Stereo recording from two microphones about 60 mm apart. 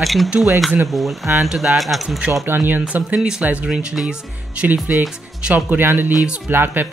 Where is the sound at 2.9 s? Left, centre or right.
Right.